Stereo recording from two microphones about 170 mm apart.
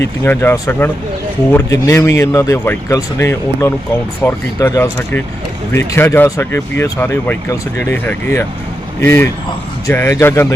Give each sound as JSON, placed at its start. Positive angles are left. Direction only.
{"t": 0.0, "sound": "speech", "side_deg": 15}